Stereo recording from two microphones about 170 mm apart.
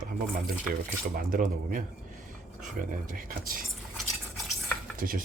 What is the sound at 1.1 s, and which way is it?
Speech, 55° right (ahead or behind).